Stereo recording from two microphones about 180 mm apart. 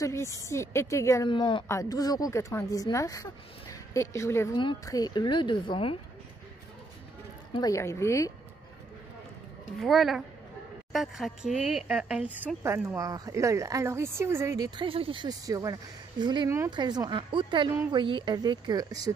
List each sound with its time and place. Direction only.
0.0 s speech: 15° left (ahead or behind)
1.3 s speech: 25° left (ahead or behind)
7.5 s speech: 20° left (ahead or behind)
9.8 s a woman's voice: centre (ahead or behind); by 19.1 s 20° right (ahead or behind)